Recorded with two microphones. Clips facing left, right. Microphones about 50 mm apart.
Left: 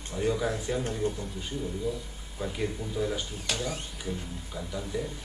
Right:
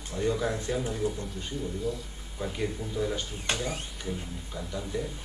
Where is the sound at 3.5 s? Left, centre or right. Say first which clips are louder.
Left 1 dB; centre.